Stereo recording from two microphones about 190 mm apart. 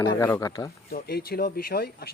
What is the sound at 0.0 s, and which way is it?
Speech, 15° left (ahead or behind).